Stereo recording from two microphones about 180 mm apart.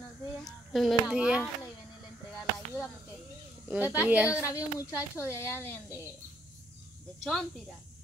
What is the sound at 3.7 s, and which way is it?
Speech, 10° right (ahead or behind).